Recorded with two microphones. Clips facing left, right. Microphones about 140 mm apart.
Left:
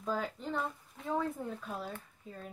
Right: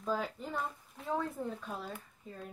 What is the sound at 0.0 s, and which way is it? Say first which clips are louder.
Speech: even; centre (ahead or behind).